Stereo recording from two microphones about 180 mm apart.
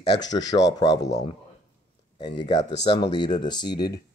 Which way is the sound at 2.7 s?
35° left (ahead or behind).